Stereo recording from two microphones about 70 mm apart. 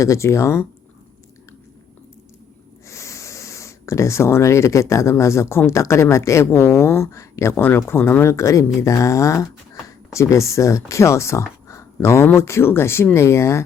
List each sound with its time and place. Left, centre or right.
0.0 s speech: left
2.8 s speech: left
8.3 s speech: left